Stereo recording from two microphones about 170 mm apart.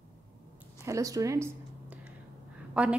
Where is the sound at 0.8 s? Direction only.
20° right (ahead or behind).